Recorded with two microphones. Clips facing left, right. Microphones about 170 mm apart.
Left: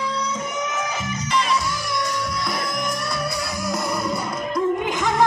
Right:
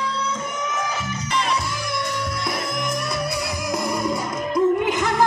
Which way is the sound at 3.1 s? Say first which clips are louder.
Right 1 dB; 20° right (ahead or behind).